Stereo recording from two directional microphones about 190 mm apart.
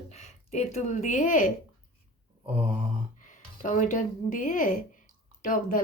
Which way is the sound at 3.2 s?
45° left (ahead or behind).